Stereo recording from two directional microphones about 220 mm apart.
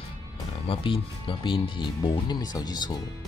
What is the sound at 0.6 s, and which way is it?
Speech, 25° left (ahead or behind).